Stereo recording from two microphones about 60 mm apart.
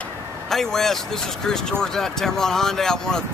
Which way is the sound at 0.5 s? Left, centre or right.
Centre.